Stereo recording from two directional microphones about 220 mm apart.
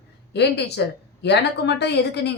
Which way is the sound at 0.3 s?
50° left (ahead or behind).